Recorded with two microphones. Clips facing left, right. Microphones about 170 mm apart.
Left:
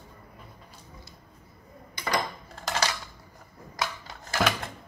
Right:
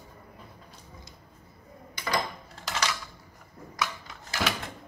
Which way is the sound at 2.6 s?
40° left (ahead or behind).